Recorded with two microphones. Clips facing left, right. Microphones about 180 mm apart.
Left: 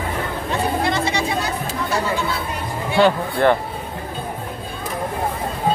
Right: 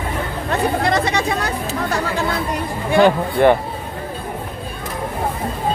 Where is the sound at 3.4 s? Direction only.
15° right (ahead or behind).